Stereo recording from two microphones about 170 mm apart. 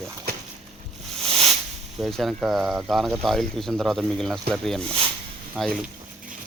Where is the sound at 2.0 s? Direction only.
Centre (ahead or behind).